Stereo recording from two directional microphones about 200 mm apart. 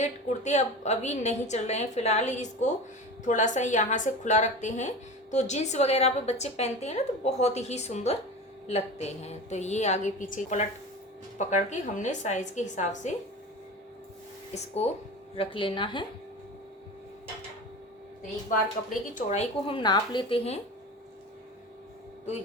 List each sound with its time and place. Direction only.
0.0 s a woman's voice: 35° left (ahead or behind)
15.4 s speech: 25° left (ahead or behind)
19.1 s speech: 30° left (ahead or behind)